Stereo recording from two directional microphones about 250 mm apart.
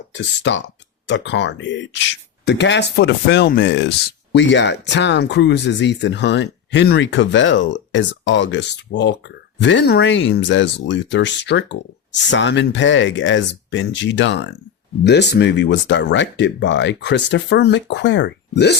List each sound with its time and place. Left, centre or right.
0.1 s speech: left